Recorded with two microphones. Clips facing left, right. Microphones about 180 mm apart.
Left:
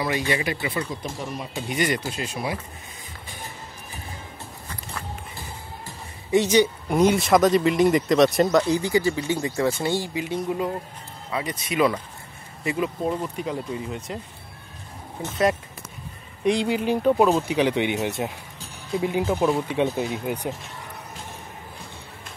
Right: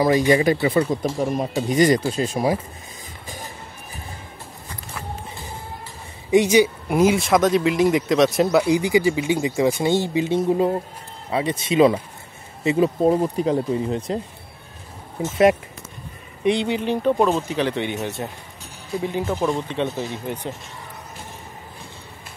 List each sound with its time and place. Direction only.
0.3 s speech: 40° right (ahead or behind)
6.3 s speech: 10° right (ahead or behind); by 14.2 s 35° right (ahead or behind)
16.4 s speech: centre (ahead or behind)